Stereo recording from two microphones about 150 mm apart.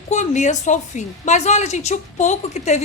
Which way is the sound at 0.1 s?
55° left (ahead or behind).